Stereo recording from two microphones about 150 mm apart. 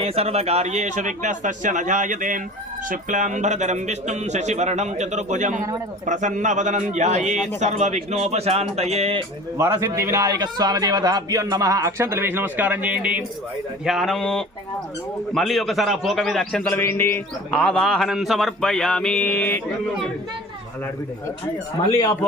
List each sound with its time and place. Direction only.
0.0 s a man's voice: 45° right (ahead or behind)
9.7 s a man's voice: 20° right (ahead or behind); by 19.6 s 10° left (ahead or behind)
21.9 s speech: 25° left (ahead or behind)